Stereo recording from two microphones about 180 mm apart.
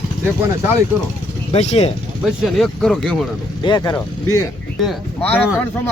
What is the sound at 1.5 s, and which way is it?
Speech, 35° left (ahead or behind).